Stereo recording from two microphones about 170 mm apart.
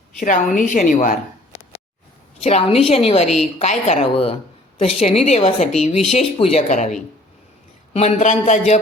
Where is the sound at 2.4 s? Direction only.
35° left (ahead or behind).